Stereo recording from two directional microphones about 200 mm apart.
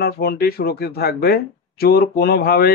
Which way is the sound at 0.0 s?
50° left (ahead or behind).